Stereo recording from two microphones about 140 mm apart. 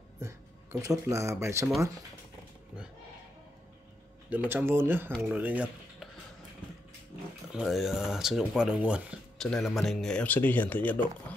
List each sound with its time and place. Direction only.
0.2 s speech: 20° right (ahead or behind)
4.3 s speech: 15° right (ahead or behind)
7.5 s speech: centre (ahead or behind)
9.4 s speech: 5° left (ahead or behind)